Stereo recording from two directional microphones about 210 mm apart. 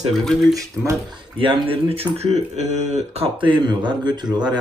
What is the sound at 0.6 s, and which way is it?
Speech, 20° right (ahead or behind).